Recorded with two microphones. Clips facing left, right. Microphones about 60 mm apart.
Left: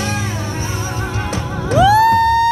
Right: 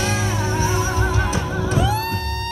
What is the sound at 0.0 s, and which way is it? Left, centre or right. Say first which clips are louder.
Music: even; left.